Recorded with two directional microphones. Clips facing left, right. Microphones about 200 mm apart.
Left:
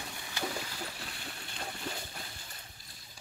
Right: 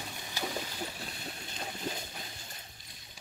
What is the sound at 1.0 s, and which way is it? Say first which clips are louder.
Boat: right 2 dB; 20° right (ahead or behind).